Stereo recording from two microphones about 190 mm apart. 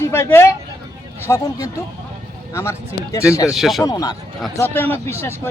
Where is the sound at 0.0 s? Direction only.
15° left (ahead or behind).